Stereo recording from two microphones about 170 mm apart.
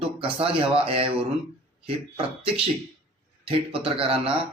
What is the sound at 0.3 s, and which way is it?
A man's voice, 35° right (ahead or behind).